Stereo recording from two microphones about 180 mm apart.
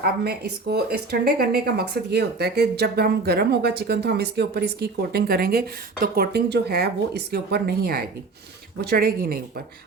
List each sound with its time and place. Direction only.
0.0 s speech: 65° right (ahead or behind)